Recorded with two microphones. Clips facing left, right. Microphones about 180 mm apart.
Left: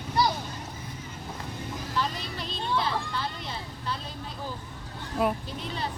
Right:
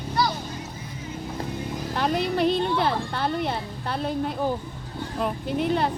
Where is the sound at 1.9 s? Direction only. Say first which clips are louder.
Right 9 dB; 60° right (ahead or behind).